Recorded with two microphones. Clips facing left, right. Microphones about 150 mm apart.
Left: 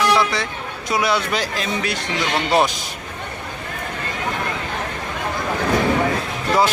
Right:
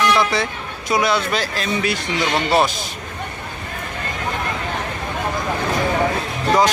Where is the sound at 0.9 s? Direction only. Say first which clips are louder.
Right 1 dB; 10° left (ahead or behind).